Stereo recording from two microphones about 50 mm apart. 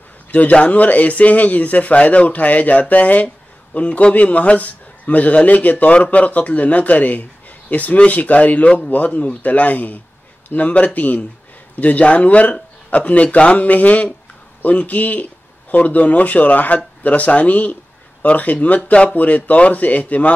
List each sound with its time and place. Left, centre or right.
0.3 s a man's voice: left